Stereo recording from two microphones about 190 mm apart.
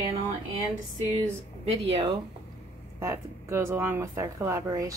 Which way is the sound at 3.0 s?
15° right (ahead or behind).